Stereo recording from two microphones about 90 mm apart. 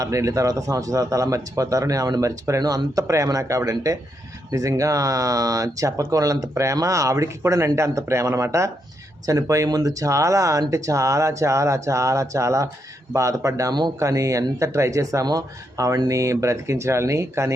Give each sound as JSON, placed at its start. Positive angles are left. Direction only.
{"t": 0.0, "sound": "speech", "side_deg": -35}